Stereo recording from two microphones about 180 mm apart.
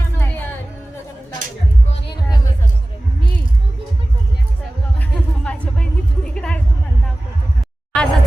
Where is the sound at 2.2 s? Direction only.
20° left (ahead or behind).